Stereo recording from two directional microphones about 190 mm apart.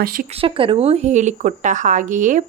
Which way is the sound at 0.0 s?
50° right (ahead or behind).